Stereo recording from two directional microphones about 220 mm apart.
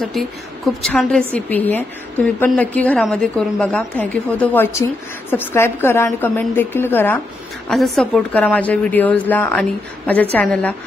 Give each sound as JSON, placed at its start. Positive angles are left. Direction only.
{"t": 0.8, "sound": "a woman's voice", "side_deg": 5}